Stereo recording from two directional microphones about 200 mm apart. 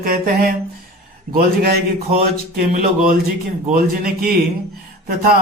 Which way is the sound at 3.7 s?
50° right (ahead or behind).